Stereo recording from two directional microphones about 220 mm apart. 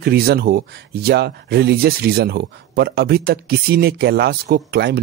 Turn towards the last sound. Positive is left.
turn(degrees=-45)  # may be behind; listen again after turning